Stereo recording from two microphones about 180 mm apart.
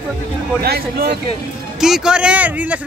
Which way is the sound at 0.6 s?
60° right (ahead or behind).